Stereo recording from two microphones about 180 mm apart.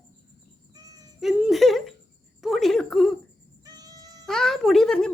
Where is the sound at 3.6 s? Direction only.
20° right (ahead or behind).